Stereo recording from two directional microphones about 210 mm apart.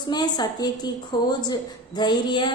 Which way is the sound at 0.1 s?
20° left (ahead or behind).